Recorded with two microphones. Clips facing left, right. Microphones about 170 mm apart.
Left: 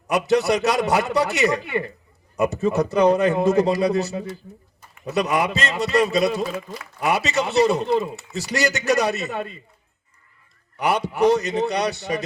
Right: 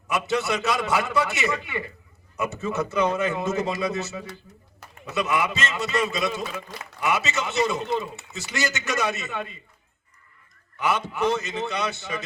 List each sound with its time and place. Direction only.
0.1 s a man's voice: 35° left (ahead or behind)
10.8 s a man's voice: 35° left (ahead or behind)